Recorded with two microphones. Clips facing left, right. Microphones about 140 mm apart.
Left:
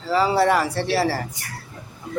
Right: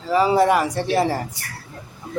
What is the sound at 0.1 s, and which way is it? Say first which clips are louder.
Speech: right 2 dB; 15° right (ahead or behind).